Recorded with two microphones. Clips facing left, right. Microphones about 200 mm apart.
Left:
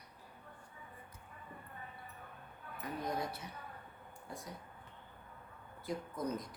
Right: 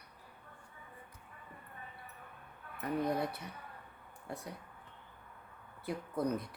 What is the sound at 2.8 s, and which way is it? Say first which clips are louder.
Speech: right 7 dB; 60° right (ahead or behind).